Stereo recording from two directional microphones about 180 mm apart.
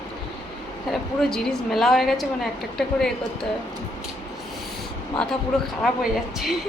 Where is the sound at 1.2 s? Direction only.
5° left (ahead or behind).